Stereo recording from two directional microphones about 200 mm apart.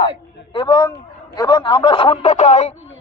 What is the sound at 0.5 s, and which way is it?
A man's voice, 20° left (ahead or behind).